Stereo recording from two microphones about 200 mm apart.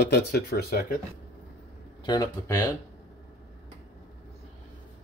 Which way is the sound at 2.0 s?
20° left (ahead or behind).